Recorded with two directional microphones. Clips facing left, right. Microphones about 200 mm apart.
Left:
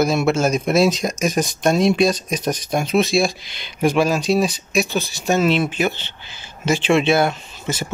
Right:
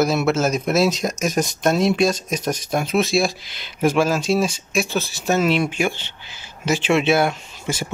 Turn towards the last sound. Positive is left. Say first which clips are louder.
# left 1 dB
turn(degrees=-10)  # may be behind; listen again after turning